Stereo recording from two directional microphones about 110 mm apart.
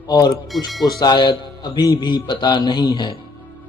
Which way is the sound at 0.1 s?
35° left (ahead or behind).